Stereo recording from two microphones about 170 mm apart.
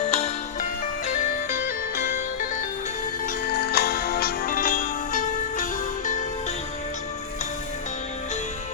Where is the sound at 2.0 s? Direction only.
65° left (ahead or behind).